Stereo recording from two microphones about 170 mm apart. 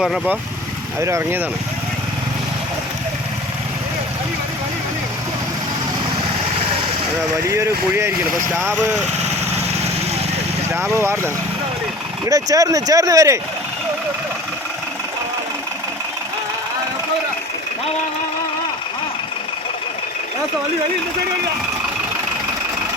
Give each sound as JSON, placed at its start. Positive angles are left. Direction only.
{"t": 0.0, "sound": "speech", "side_deg": 0}
{"t": 0.9, "sound": "speech", "side_deg": -15}
{"t": 7.5, "sound": "speech", "side_deg": -15}
{"t": 10.9, "sound": "speech", "side_deg": -15}